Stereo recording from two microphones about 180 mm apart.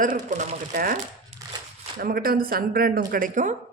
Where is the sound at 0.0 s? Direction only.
45° right (ahead or behind).